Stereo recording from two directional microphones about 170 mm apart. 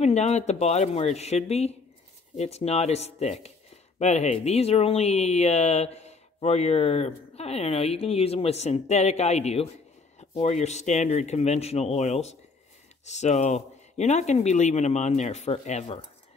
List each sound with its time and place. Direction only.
0.0 s speech: 40° left (ahead or behind)